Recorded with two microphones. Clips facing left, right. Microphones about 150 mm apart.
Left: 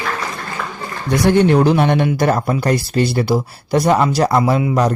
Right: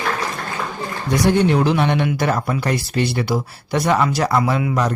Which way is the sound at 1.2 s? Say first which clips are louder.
Left 4 dB; 45° left (ahead or behind).